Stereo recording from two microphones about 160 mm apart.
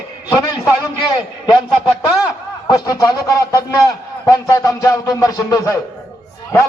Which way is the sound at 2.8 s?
20° left (ahead or behind).